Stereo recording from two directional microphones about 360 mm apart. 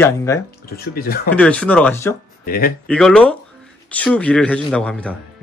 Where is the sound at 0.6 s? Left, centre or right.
Left.